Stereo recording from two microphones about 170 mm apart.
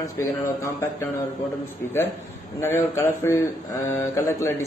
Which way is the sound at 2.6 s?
15° left (ahead or behind).